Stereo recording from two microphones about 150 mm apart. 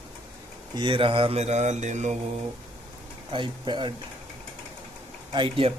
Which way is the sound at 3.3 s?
30° right (ahead or behind).